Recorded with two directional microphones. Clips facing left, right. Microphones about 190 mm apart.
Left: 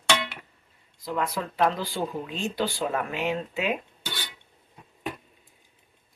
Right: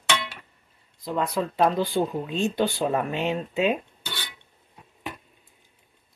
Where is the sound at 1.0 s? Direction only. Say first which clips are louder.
Right 3 dB; 25° right (ahead or behind).